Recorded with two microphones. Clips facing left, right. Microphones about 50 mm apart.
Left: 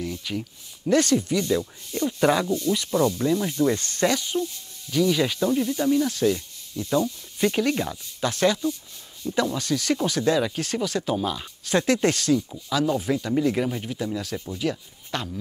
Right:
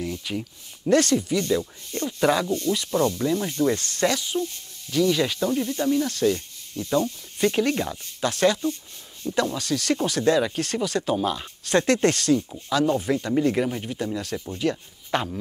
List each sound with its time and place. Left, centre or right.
0.0 s speech: centre
0.8 s speech: centre
3.2 s speech: centre
3.7 s speech: centre
4.3 s speech: centre
8.3 s speech: centre
11.6 s speech: centre
15.0 s speech: centre